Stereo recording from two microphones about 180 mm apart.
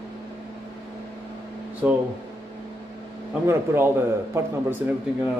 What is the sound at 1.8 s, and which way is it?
Speech, 10° right (ahead or behind).